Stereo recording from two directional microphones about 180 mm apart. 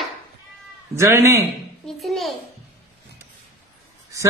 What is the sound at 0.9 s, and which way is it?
Speech, 15° right (ahead or behind).